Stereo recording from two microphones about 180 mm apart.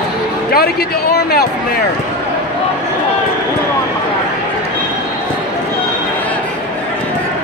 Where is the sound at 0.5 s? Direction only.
60° left (ahead or behind).